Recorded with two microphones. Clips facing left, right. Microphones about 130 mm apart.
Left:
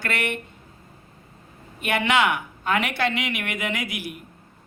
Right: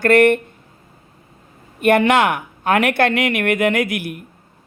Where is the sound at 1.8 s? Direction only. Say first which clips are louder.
Right 8 dB; 50° right (ahead or behind).